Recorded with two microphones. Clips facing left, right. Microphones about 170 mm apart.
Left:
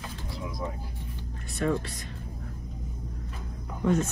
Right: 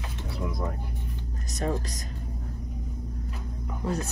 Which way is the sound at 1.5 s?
40° right (ahead or behind).